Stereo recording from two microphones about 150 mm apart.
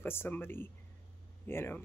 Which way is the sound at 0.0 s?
15° left (ahead or behind).